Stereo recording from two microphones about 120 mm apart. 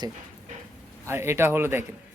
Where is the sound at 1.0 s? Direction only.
20° right (ahead or behind).